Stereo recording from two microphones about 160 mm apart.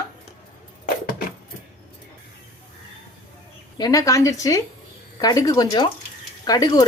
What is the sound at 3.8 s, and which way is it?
Speech, 20° left (ahead or behind).